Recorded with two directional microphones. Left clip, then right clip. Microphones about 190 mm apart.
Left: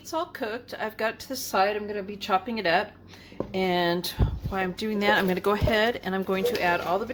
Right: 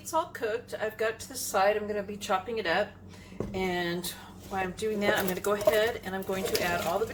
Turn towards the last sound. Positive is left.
turn(degrees=55)  # may be behind; listen again after turning